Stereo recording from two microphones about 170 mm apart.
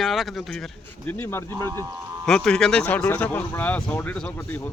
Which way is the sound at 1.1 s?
15° left (ahead or behind).